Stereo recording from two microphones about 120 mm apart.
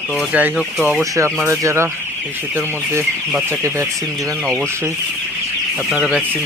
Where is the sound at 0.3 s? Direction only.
15° right (ahead or behind).